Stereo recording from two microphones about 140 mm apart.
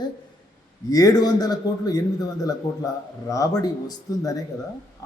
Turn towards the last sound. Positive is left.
turn(degrees=25)  # may be behind; listen again after turning